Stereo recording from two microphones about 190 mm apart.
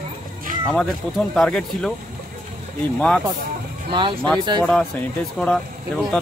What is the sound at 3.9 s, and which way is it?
Speech, 25° right (ahead or behind).